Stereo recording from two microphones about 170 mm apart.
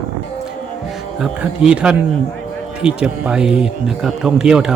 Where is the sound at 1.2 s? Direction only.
5° right (ahead or behind).